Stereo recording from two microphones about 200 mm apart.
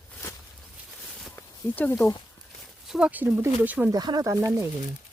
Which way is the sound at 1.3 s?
10° left (ahead or behind).